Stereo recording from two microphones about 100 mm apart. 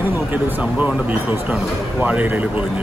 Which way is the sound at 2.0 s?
15° right (ahead or behind).